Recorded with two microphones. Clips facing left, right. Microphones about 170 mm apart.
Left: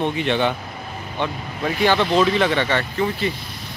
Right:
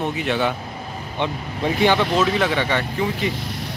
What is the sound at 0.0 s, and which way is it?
Speech, 5° right (ahead or behind).